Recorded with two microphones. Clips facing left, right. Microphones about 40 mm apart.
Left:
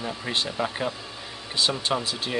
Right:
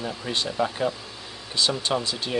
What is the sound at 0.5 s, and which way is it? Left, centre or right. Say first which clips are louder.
Speech: right 3 dB; centre.